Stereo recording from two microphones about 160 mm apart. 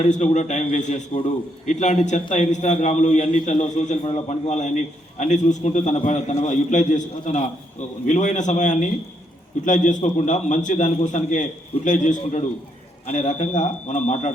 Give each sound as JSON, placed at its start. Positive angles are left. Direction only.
{"t": 0.1, "sound": "a man's voice", "side_deg": 45}